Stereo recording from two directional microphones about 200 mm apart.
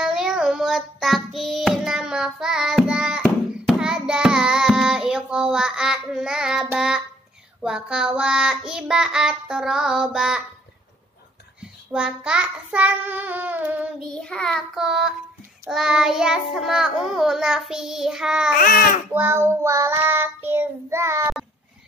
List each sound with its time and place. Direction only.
0.0 s child singing: 5° right (ahead or behind)
11.9 s child singing: 5° right (ahead or behind)
14.0 s child singing: 5° left (ahead or behind)
18.5 s speech: 45° left (ahead or behind)
19.1 s child singing: 10° right (ahead or behind)